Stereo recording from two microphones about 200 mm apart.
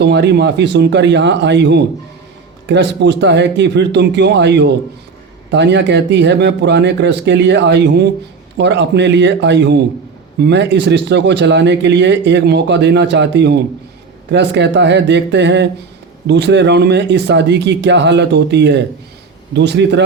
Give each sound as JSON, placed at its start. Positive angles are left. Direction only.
{"t": 0.0, "sound": "speech", "side_deg": -60}